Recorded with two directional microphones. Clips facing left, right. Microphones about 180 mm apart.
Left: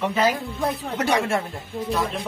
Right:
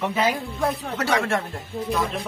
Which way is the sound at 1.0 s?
15° left (ahead or behind).